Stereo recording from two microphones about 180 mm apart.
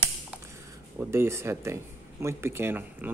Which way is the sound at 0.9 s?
15° right (ahead or behind).